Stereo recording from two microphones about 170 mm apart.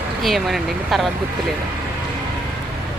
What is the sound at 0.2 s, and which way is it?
Speech, centre (ahead or behind).